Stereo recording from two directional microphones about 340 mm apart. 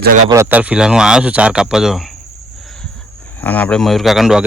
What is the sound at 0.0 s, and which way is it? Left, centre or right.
Speech, right.